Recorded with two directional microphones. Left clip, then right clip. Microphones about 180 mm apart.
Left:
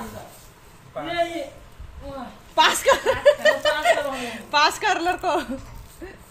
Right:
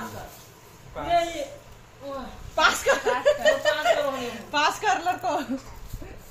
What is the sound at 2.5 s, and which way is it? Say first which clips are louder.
A woman's voice: left 4 dB; 60° left (ahead or behind).